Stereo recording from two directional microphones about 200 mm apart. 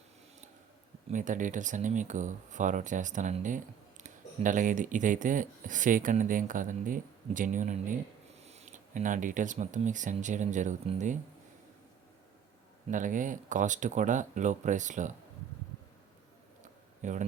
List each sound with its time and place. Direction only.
1.1 s speech: 40° right (ahead or behind)
12.9 s speech: 40° right (ahead or behind)
17.0 s speech: 40° right (ahead or behind)